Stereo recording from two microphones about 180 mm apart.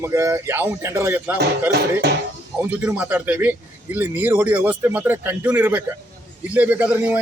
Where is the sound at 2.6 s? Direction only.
10° right (ahead or behind).